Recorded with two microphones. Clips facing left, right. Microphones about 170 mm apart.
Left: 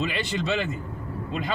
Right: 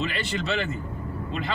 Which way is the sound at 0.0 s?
15° left (ahead or behind).